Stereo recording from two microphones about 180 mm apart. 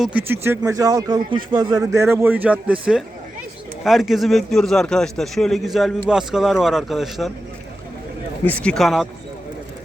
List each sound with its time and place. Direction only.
0.0 s a man's voice: 10° right (ahead or behind)
8.4 s a man's voice: 5° left (ahead or behind)